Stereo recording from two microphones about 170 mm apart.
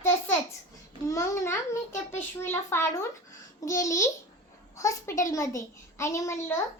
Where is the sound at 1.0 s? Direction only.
15° left (ahead or behind).